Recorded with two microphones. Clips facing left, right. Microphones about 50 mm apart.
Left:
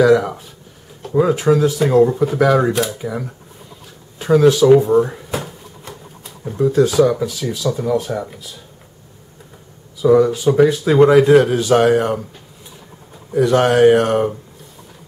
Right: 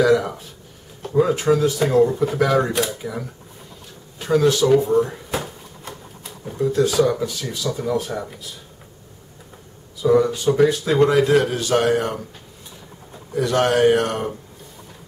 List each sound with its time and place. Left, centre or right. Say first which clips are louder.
0.0 s speech: left 4 dB; centre
10.0 s speech: left 4 dB; centre
13.3 s speech: left 5 dB; centre